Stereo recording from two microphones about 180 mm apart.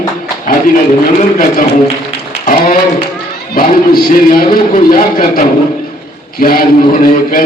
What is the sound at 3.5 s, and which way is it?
Music, 55° left (ahead or behind).